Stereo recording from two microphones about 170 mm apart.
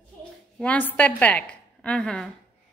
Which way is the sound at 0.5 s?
10° left (ahead or behind).